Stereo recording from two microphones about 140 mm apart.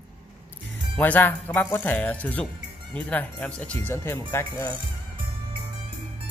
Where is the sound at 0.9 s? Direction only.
10° left (ahead or behind).